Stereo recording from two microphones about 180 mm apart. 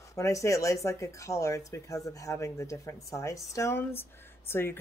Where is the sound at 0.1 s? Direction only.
15° left (ahead or behind).